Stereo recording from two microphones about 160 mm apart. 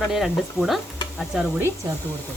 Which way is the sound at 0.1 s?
Centre (ahead or behind).